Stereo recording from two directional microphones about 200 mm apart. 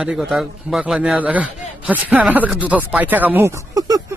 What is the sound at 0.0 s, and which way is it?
A man's voice, centre (ahead or behind).